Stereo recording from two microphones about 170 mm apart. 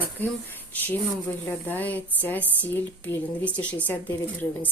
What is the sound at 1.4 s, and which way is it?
A woman's voice, 10° left (ahead or behind).